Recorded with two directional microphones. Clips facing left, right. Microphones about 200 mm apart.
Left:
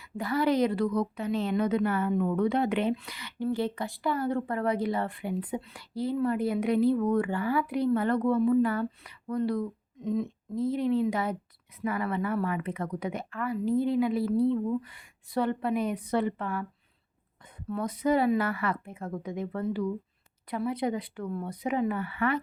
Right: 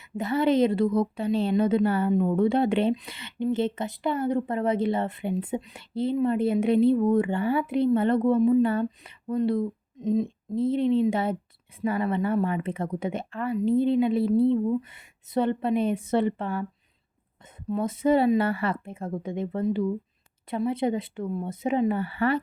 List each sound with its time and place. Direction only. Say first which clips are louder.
0.0 s speech: right 3 dB; 25° right (ahead or behind)
17.7 s speech: right 4 dB; 25° right (ahead or behind)